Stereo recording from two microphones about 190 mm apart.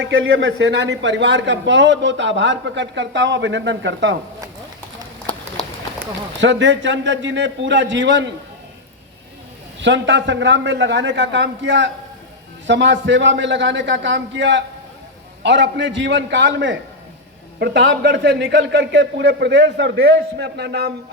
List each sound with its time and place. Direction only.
0.0 s speech: 90° right; by 4.2 s 70° right (ahead or behind)
6.4 s speech: 70° right (ahead or behind)
9.8 s a man's voice: 70° right (ahead or behind)